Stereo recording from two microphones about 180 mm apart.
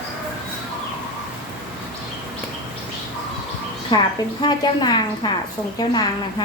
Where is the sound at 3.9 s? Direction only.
25° left (ahead or behind).